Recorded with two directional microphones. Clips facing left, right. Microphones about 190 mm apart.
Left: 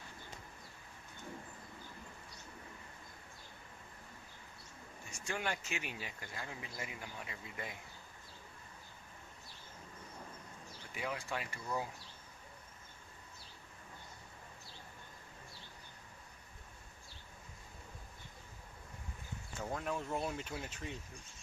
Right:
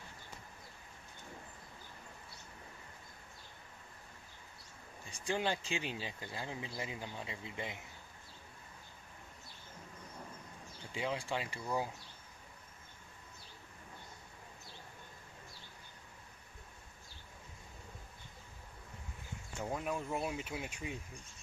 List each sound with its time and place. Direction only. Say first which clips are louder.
5.1 s speech: right 4 dB; 30° right (ahead or behind)
10.9 s speech: right 3 dB; 25° right (ahead or behind)
19.6 s speech: right 1 dB; 10° right (ahead or behind)